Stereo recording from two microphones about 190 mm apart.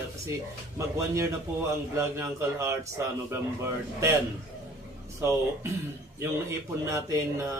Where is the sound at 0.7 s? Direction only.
15° right (ahead or behind).